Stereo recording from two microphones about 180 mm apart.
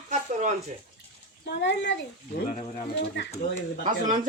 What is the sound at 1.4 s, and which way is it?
Speech, 75° left (ahead or behind).